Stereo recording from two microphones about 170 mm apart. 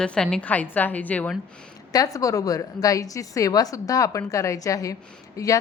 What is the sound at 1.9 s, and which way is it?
A woman's voice, 20° left (ahead or behind).